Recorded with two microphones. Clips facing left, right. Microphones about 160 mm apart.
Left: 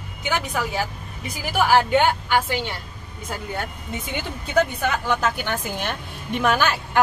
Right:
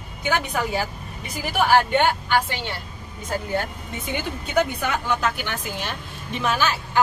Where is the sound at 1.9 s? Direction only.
10° left (ahead or behind).